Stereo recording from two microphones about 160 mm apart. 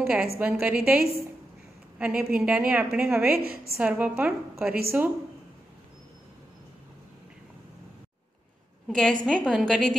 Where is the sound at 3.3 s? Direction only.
70° right (ahead or behind).